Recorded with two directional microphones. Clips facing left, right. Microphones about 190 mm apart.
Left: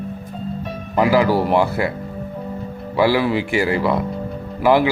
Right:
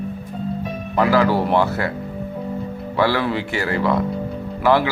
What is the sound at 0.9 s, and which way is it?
Speech, 15° left (ahead or behind).